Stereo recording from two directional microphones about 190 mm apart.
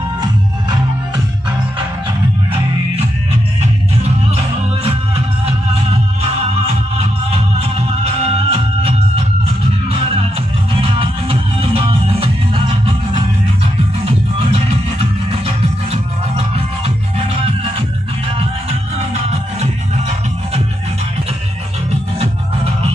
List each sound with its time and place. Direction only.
0.2 s music: 20° right (ahead or behind)
4.8 s music: 30° right (ahead or behind)
7.7 s music: 30° right (ahead or behind)
10.8 s music: 30° right (ahead or behind)
14.0 s music: 30° right (ahead or behind)
18.4 s music: 30° right (ahead or behind)